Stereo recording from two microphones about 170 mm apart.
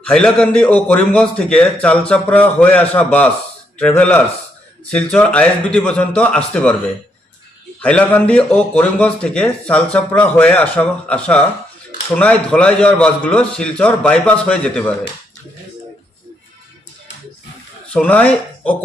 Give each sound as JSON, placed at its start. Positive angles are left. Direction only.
{"t": 0.0, "sound": "a man's voice", "side_deg": 5}
{"t": 7.8, "sound": "a man's voice", "side_deg": 10}
{"t": 17.9, "sound": "a man's voice", "side_deg": 10}